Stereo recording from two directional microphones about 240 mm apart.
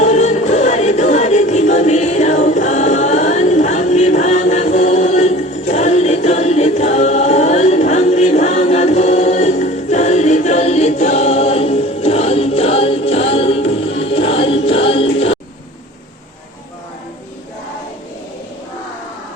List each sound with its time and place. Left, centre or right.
0.0 s music: left